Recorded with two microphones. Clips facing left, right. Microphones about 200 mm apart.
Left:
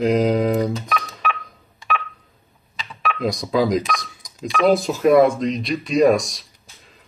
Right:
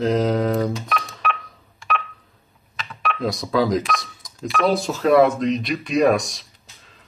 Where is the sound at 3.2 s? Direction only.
15° left (ahead or behind).